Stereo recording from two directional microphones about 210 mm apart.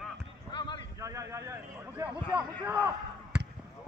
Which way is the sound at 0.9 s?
15° right (ahead or behind).